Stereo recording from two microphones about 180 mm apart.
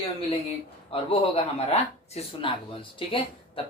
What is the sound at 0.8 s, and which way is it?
Speech, 30° left (ahead or behind).